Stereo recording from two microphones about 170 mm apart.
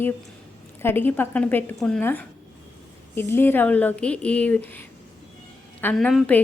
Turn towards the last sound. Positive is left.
turn(degrees=5)  # may be behind; listen again after turning